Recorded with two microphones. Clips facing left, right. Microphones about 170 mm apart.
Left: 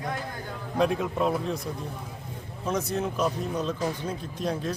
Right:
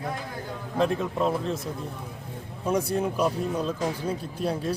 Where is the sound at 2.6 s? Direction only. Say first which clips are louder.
Right 3 dB; 10° right (ahead or behind).